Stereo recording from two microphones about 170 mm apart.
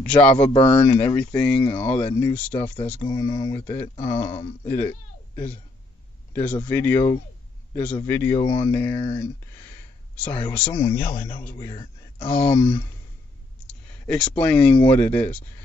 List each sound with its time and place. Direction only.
0.0 s a man's voice: 5° left (ahead or behind)
1.6 s speech: 30° left (ahead or behind)
2.1 s a man's voice: 10° left (ahead or behind)
3.9 s speech: 35° left (ahead or behind)
4.2 s a man's voice: 15° left (ahead or behind)
6.3 s a man's voice: 10° left (ahead or behind)
11.1 s speech: 40° left (ahead or behind)
11.5 s a man's voice: 25° left (ahead or behind)
12.3 s a man's voice: 10° left (ahead or behind)
13.7 s speech: 5° left (ahead or behind)